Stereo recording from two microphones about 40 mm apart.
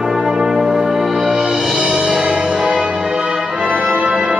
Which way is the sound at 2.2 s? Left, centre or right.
Right.